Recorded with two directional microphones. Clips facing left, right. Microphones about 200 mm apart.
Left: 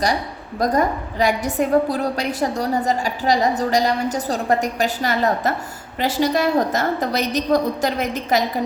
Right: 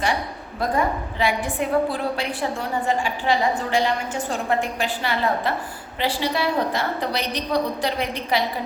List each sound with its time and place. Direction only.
0.6 s a woman's voice: 40° left (ahead or behind)